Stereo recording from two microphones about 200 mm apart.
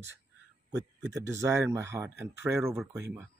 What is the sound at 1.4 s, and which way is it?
Speech, 15° right (ahead or behind).